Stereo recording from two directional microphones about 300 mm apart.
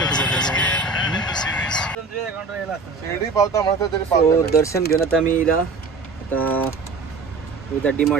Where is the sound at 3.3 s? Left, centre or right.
Centre.